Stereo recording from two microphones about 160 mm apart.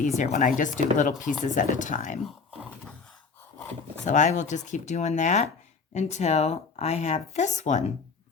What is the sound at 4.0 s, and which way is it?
A woman's voice, 50° left (ahead or behind).